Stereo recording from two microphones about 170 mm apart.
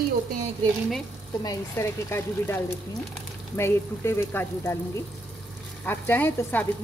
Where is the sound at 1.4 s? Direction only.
20° left (ahead or behind).